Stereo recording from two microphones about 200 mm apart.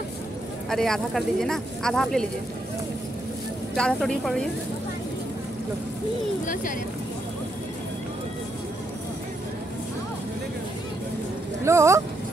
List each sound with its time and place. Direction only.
0.7 s speech: centre (ahead or behind)
3.7 s speech: 5° left (ahead or behind)
6.4 s speech: 40° left (ahead or behind)
11.6 s speech: 15° right (ahead or behind)